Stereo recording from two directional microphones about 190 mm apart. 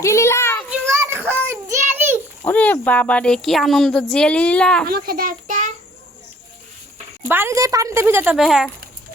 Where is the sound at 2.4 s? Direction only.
10° left (ahead or behind).